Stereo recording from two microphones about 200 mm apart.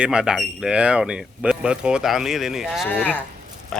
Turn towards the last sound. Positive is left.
turn(degrees=0)  # may be behind; listen again after turning